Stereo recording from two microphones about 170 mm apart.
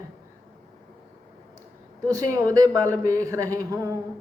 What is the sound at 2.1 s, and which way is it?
Speech, 20° right (ahead or behind).